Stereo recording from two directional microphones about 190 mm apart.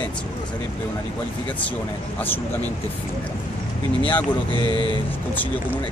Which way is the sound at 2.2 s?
10° left (ahead or behind).